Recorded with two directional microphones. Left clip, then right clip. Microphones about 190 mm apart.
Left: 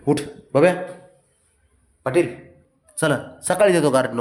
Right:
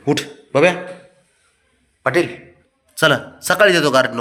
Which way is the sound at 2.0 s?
10° left (ahead or behind).